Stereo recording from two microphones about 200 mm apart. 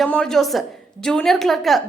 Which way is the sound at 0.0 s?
5° left (ahead or behind).